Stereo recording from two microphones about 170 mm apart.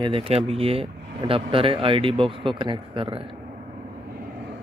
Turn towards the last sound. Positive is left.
turn(degrees=-30)  # may be behind; listen again after turning